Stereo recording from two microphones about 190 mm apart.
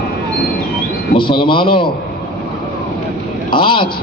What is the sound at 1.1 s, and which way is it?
Speech, 25° left (ahead or behind).